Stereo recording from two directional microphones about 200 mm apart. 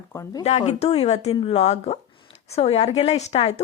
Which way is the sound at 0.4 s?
35° left (ahead or behind).